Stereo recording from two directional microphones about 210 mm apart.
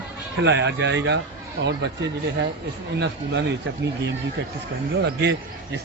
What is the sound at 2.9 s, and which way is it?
Speech, 55° right (ahead or behind).